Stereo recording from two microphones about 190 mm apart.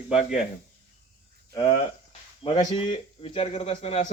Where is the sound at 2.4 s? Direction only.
30° left (ahead or behind).